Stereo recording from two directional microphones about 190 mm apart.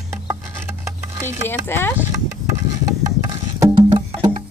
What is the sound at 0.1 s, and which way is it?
Patter, 10° right (ahead or behind).